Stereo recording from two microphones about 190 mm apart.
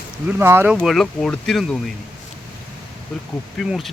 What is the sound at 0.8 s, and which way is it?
Speech, centre (ahead or behind).